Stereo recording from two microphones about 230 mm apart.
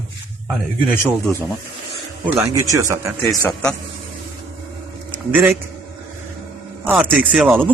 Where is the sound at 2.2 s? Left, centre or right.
Centre.